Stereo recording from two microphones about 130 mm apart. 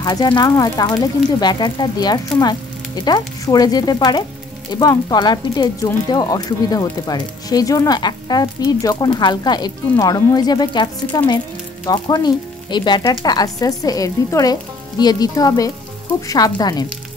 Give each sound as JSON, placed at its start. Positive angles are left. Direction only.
{"t": 0.0, "sound": "speech", "side_deg": 30}